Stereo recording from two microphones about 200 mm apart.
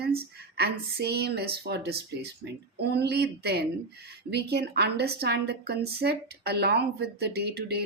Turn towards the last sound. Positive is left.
turn(degrees=-55)  # may be behind; listen again after turning